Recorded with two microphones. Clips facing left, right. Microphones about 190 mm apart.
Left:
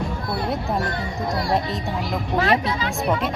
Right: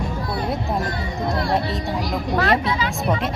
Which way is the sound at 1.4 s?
5° left (ahead or behind).